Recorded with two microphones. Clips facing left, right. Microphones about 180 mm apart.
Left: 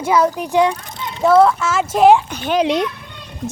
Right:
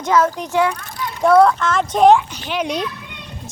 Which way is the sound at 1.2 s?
Centre (ahead or behind).